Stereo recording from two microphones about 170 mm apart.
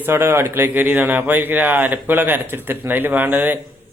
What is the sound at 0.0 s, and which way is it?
Speech, 15° right (ahead or behind).